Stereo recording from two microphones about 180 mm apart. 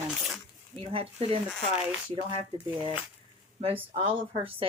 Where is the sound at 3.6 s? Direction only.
30° right (ahead or behind).